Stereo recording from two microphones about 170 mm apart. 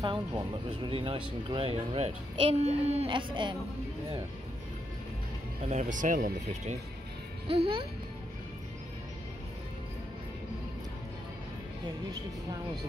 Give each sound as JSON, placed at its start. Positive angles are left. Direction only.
{"t": 0.8, "sound": "a child's voice", "side_deg": -30}
{"t": 5.7, "sound": "speech", "side_deg": -45}
{"t": 7.4, "sound": "a child's voice", "side_deg": -35}